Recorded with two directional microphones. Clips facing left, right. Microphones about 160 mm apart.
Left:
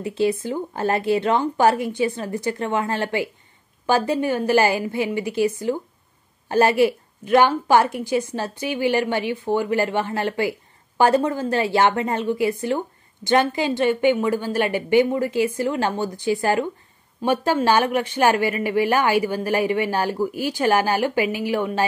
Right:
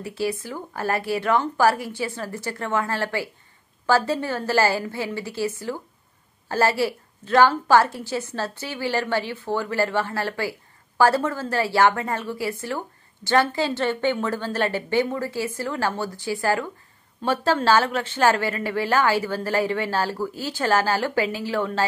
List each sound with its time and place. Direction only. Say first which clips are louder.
0.0 s a woman's voice: left 5 dB; 20° left (ahead or behind)